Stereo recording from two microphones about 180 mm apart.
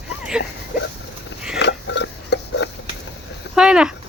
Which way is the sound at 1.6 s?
75° left (ahead or behind).